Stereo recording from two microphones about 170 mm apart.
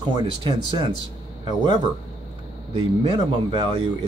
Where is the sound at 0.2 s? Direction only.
25° right (ahead or behind).